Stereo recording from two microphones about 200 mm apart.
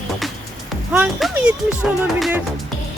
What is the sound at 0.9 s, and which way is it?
Speech, centre (ahead or behind).